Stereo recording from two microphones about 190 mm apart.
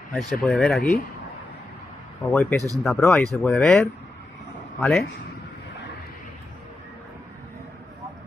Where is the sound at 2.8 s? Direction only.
Centre (ahead or behind).